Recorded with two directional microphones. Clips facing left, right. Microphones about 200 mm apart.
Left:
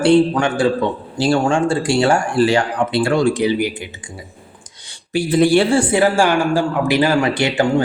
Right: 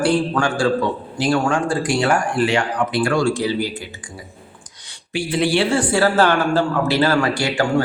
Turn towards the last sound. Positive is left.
turn(degrees=20)  # may be behind; listen again after turning